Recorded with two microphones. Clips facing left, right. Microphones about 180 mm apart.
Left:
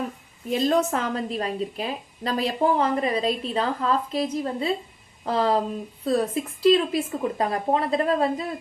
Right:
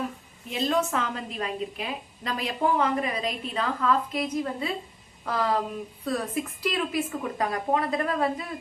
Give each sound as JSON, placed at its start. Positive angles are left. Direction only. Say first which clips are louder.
{"t": 0.5, "sound": "a woman's voice", "louder": "left 4 dB", "side_deg": 40}